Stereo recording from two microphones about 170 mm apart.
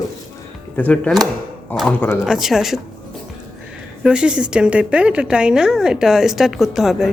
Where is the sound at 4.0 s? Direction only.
5° right (ahead or behind).